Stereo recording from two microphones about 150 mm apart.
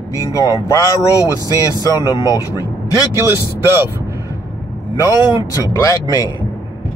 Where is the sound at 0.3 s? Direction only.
25° left (ahead or behind).